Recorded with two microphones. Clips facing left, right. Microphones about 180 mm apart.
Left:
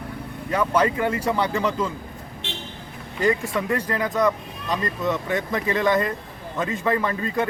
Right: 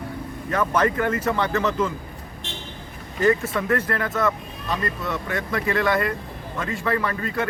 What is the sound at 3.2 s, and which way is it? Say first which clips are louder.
Speech: right 2 dB; 15° left (ahead or behind).